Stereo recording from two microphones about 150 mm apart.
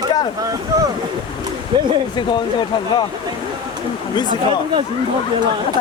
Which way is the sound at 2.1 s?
30° left (ahead or behind).